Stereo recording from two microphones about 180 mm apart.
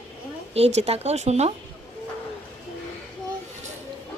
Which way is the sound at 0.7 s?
35° right (ahead or behind).